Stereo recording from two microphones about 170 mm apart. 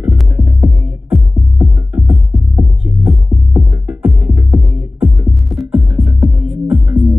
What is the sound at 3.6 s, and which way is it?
Music, 5° right (ahead or behind).